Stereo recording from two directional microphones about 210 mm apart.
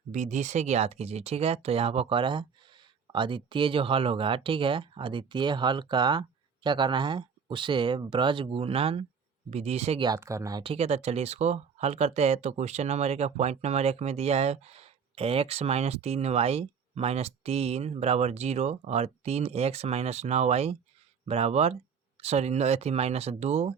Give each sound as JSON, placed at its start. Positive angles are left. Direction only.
{"t": 0.1, "sound": "speech", "side_deg": -35}
{"t": 10.1, "sound": "speech", "side_deg": -15}